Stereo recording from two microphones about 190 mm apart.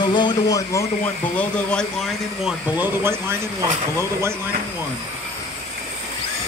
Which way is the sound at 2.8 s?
10° right (ahead or behind).